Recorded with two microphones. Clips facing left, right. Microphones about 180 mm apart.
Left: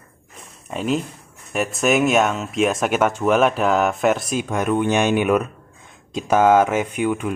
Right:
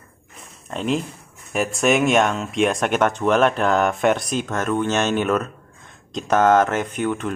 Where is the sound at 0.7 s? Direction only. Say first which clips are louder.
Left 1 dB; 5° left (ahead or behind).